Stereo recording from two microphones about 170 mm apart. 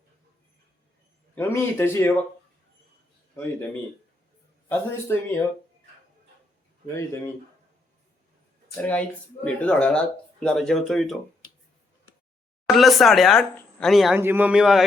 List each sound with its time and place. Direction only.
1.4 s speech: 15° left (ahead or behind)
4.7 s speech: 15° left (ahead or behind)
8.7 s speech: 5° left (ahead or behind)
12.6 s speech: centre (ahead or behind)
14.2 s a man's voice: 10° right (ahead or behind)